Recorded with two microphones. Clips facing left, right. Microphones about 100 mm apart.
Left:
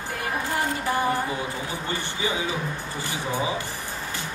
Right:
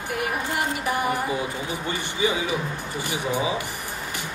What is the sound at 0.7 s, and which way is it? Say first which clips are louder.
Speech: left 2 dB; 15° right (ahead or behind).